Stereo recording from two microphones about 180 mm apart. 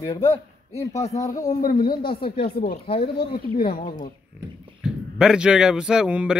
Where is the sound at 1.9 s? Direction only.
55° left (ahead or behind).